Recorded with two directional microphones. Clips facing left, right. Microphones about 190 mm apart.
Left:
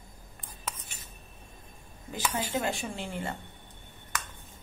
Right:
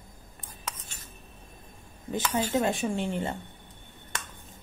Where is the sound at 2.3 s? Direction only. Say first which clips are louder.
Right 6 dB; 20° right (ahead or behind).